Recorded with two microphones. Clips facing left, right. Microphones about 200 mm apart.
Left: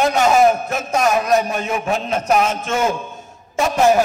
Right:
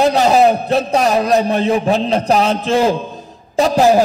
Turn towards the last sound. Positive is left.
turn(degrees=-35)  # may be behind; listen again after turning